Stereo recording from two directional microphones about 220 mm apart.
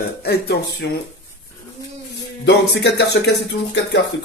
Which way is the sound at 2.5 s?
50° left (ahead or behind).